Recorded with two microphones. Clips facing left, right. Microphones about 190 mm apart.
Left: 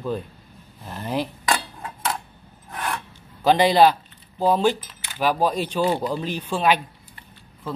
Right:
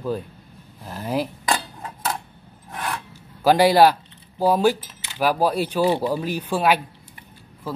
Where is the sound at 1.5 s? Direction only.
20° right (ahead or behind).